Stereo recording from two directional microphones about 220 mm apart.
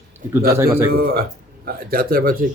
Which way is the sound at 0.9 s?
45° right (ahead or behind).